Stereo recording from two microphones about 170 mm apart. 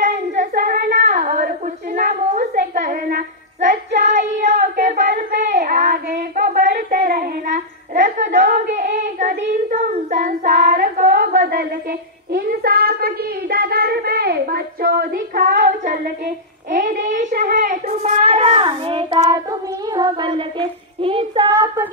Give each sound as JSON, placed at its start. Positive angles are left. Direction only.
{"t": 0.0, "sound": "child singing", "side_deg": -50}
{"t": 2.0, "sound": "a sound", "side_deg": -50}
{"t": 3.6, "sound": "child singing", "side_deg": -45}